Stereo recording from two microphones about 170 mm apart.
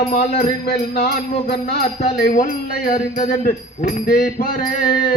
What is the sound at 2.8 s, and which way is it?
Mantra, 55° left (ahead or behind).